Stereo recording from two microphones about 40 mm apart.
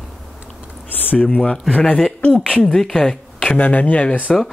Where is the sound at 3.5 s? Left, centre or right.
Left.